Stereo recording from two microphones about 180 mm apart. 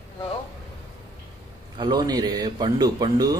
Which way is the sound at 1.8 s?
25° right (ahead or behind).